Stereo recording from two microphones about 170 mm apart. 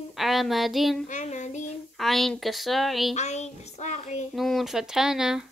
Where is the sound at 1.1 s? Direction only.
45° left (ahead or behind).